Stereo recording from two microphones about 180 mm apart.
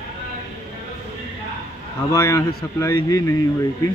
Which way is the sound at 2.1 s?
15° left (ahead or behind).